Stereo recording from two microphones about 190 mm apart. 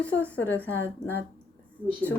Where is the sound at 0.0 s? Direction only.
5° left (ahead or behind).